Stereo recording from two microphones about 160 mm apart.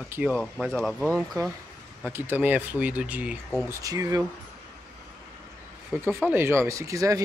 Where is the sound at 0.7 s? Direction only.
5° left (ahead or behind).